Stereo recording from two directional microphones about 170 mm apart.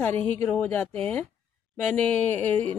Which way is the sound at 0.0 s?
10° left (ahead or behind).